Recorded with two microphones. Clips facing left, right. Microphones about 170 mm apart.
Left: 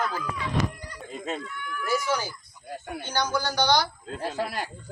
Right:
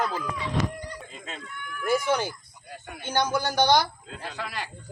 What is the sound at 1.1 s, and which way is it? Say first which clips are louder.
Speech: left 8 dB; 45° left (ahead or behind).